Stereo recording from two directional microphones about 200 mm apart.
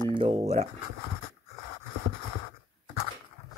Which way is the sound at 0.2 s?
30° right (ahead or behind).